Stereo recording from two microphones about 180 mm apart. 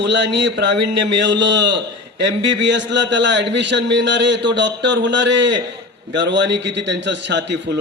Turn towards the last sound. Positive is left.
turn(degrees=-75)  # may be behind; listen again after turning